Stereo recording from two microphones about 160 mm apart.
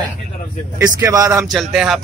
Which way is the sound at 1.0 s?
20° right (ahead or behind).